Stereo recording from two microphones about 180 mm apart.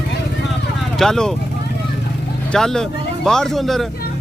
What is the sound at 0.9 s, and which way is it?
Speech, 5° left (ahead or behind).